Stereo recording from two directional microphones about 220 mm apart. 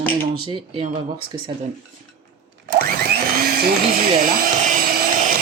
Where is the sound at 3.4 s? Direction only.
45° right (ahead or behind).